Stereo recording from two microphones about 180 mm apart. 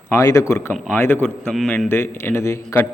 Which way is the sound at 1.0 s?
10° left (ahead or behind).